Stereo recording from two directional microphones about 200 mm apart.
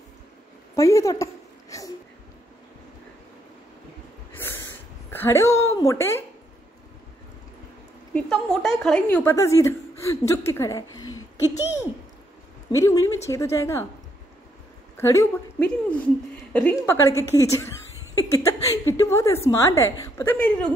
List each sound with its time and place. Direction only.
0.7 s a sound: 15° left (ahead or behind)
4.3 s snort: 10° left (ahead or behind)
5.1 s a woman's voice: 10° left (ahead or behind)
8.1 s a woman's voice: 5° left (ahead or behind)
12.7 s a woman's voice: 15° left (ahead or behind)
15.0 s a woman's voice: 15° left (ahead or behind)